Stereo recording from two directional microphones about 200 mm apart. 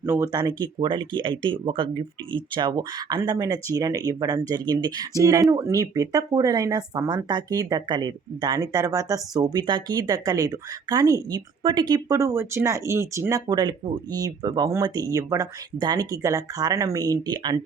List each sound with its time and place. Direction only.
0.0 s speech: 10° right (ahead or behind)